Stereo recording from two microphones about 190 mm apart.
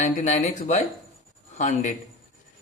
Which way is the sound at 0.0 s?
40° left (ahead or behind).